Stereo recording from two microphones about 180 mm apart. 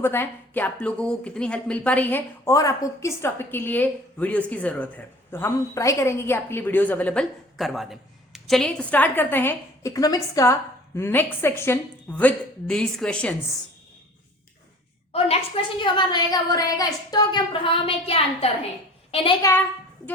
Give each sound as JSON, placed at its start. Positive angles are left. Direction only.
{"t": 0.0, "sound": "speech", "side_deg": 10}
{"t": 15.8, "sound": "a woman's voice", "side_deg": 25}
{"t": 19.4, "sound": "speech", "side_deg": 15}